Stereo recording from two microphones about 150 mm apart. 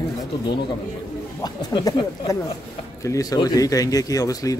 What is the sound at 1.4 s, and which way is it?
Speech, 25° left (ahead or behind).